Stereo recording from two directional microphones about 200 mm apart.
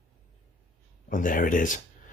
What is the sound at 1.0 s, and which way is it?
Speech, 40° left (ahead or behind).